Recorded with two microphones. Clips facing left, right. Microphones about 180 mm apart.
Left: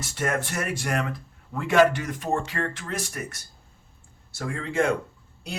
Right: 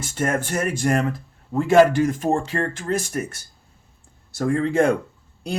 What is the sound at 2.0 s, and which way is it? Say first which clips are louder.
Speech: right 6 dB; 45° right (ahead or behind).